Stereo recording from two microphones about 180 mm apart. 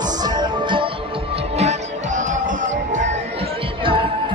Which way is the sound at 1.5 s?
40° right (ahead or behind).